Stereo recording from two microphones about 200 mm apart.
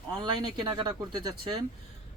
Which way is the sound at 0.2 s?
20° right (ahead or behind).